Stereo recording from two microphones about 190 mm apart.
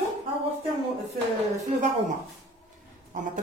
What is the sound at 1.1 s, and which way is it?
Speech, 35° right (ahead or behind).